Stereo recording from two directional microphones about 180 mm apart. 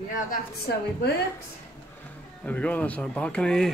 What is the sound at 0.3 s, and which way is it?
Speech, 60° left (ahead or behind).